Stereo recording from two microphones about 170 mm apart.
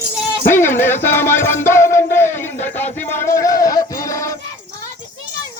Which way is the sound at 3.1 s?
15° left (ahead or behind).